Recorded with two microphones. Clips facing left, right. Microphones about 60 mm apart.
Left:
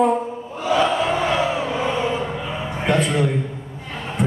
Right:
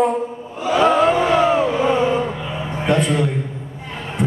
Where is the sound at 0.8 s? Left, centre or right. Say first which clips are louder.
Right 5 dB; right.